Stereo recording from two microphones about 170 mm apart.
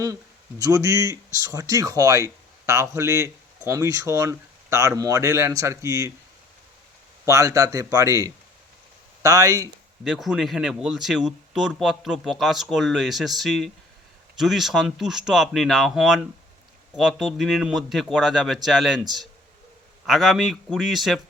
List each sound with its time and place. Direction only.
0.6 s speech: 20° right (ahead or behind)
7.3 s speech: 20° right (ahead or behind)
10.0 s speech: centre (ahead or behind)